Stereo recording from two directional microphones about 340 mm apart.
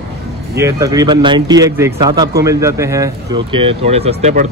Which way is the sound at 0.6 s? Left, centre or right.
Centre.